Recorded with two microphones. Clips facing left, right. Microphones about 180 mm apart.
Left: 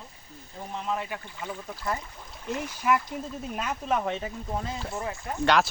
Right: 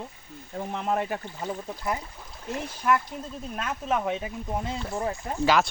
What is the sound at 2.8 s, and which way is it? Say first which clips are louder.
Speech: right 1 dB; 5° left (ahead or behind).